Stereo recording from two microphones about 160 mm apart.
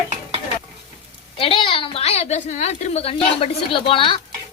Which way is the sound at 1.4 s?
35° left (ahead or behind).